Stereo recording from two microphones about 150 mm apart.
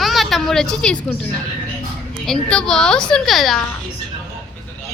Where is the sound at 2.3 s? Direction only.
5° left (ahead or behind).